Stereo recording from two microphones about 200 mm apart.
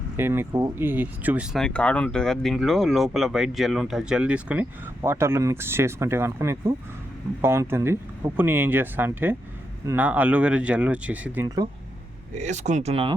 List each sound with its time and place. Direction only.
0.2 s speech: 10° right (ahead or behind)
12.4 s speech: 35° right (ahead or behind)